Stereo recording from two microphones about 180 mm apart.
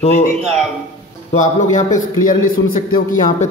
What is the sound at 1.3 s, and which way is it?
A man's voice, 45° left (ahead or behind).